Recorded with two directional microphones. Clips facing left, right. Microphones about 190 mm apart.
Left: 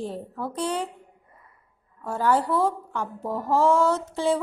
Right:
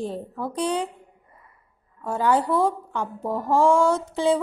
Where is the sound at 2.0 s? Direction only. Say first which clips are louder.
Right 1 dB; 15° right (ahead or behind).